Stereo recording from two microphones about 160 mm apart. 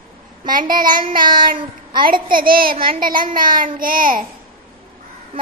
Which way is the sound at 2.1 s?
30° right (ahead or behind).